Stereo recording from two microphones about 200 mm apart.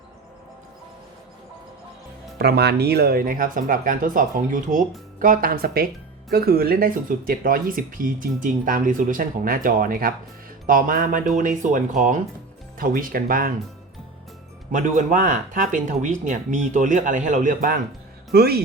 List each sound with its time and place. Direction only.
2.4 s speech: 55° right (ahead or behind)
14.7 s speech: 40° right (ahead or behind)